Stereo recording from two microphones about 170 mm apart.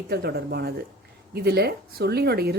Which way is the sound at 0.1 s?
70° right (ahead or behind).